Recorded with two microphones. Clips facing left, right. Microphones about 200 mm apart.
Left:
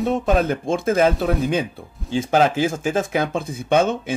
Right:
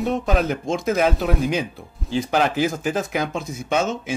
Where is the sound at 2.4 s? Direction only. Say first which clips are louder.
Left 2 dB; 25° left (ahead or behind).